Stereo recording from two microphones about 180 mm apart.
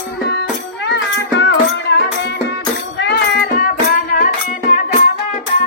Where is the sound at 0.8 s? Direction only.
75° left (ahead or behind).